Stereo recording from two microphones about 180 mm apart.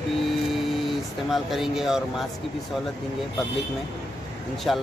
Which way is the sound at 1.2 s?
Centre (ahead or behind).